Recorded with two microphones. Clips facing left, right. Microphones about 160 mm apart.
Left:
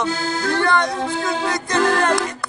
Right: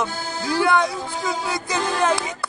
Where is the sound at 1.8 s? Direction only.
75° left (ahead or behind).